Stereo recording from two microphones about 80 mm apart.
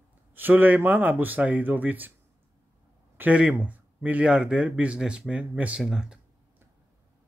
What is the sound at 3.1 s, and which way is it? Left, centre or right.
Speech, centre.